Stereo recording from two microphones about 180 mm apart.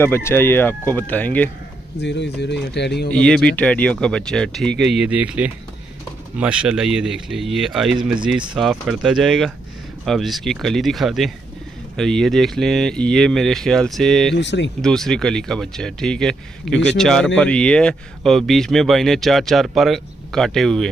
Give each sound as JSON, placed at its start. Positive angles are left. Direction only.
{"t": 0.0, "sound": "speech", "side_deg": 15}
{"t": 2.0, "sound": "speech", "side_deg": 70}
{"t": 3.1, "sound": "speech", "side_deg": 5}
{"t": 14.3, "sound": "speech", "side_deg": 75}
{"t": 14.8, "sound": "speech", "side_deg": 0}